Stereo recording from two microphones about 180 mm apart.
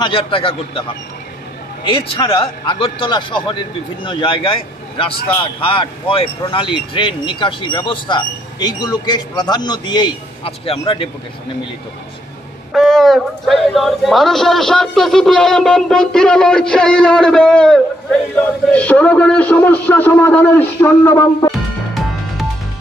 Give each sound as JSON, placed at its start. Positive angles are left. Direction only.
{"t": 0.0, "sound": "speech", "side_deg": 30}
{"t": 2.2, "sound": "speech", "side_deg": 30}
{"t": 12.7, "sound": "a man's voice", "side_deg": 0}
{"t": 21.5, "sound": "music", "side_deg": 0}